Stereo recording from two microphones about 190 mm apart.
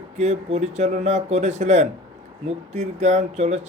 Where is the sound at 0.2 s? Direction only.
40° right (ahead or behind).